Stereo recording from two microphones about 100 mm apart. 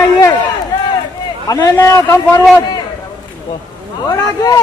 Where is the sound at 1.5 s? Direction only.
30° left (ahead or behind).